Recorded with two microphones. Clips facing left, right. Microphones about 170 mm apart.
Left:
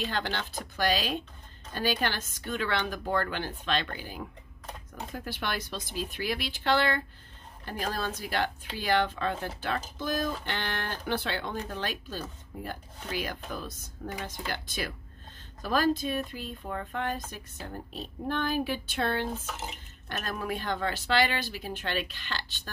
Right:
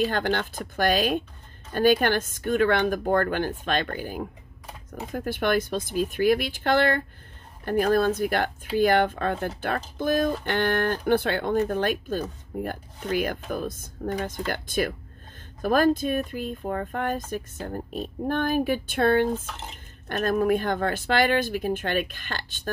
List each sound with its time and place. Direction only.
0.0 s speech: 50° right (ahead or behind)
19.4 s speech: 5° left (ahead or behind)
20.1 s speech: 50° right (ahead or behind)